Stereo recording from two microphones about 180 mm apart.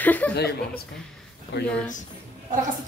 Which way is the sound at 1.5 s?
75° left (ahead or behind).